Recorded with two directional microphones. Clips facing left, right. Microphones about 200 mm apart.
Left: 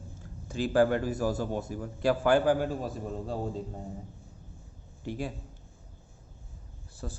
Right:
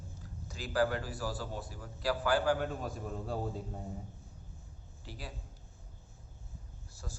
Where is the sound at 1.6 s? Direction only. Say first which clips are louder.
Left 6 dB; 25° left (ahead or behind).